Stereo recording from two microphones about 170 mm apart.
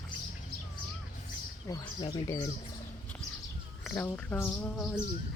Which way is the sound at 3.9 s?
5° left (ahead or behind).